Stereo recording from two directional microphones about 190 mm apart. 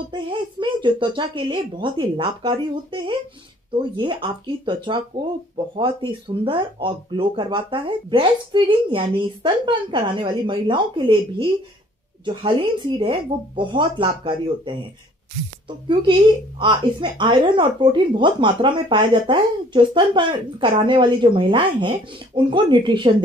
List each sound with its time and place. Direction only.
0.1 s speech: 25° right (ahead or behind)
15.9 s speech: 25° right (ahead or behind)